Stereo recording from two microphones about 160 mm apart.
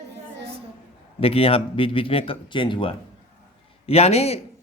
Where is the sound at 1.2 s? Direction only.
35° left (ahead or behind).